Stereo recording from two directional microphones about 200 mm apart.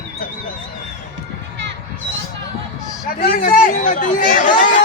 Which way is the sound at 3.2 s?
40° left (ahead or behind).